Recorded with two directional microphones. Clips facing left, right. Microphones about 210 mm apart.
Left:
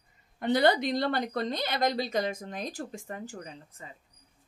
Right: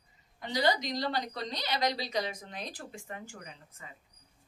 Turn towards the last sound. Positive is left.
turn(degrees=35)  # may be behind; listen again after turning